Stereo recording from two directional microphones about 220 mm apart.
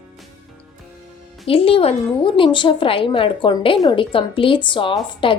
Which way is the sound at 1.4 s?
25° left (ahead or behind).